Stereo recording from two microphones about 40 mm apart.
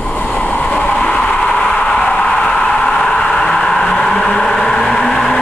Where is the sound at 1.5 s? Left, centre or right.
Left.